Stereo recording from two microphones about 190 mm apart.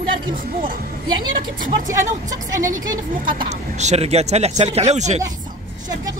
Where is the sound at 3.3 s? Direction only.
30° right (ahead or behind).